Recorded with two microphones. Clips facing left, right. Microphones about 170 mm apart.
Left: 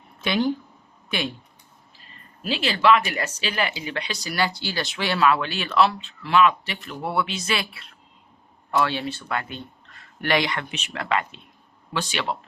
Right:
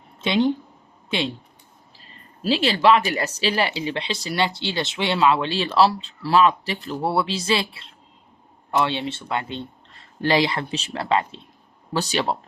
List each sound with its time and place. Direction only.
0.2 s a woman's voice: 25° right (ahead or behind)
2.4 s speech: 35° right (ahead or behind)